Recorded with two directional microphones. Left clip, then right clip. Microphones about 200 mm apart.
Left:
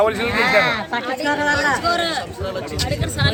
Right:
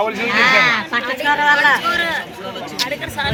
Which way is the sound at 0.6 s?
60° left (ahead or behind).